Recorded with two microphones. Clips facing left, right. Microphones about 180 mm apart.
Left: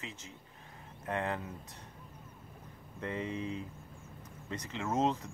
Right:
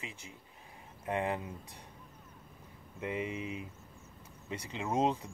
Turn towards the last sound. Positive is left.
turn(degrees=-15)  # may be behind; listen again after turning